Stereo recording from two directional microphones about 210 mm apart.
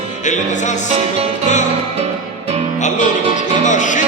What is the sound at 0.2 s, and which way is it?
Music, 35° left (ahead or behind).